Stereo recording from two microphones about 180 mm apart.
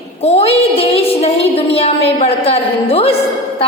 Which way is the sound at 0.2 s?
35° left (ahead or behind).